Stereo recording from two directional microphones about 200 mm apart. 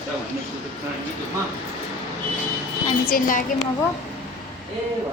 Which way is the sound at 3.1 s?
40° left (ahead or behind).